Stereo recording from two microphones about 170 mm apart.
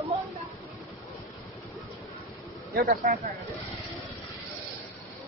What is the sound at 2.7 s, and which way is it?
Speech, 55° right (ahead or behind).